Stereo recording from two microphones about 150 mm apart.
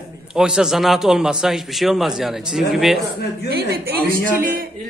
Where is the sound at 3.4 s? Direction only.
90° right.